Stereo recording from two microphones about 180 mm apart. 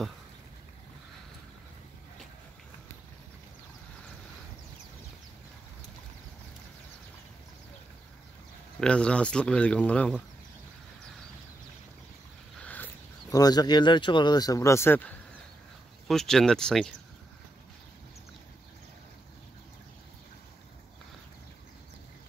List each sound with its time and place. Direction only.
8.7 s speech: 5° left (ahead or behind)
12.6 s speech: 10° left (ahead or behind)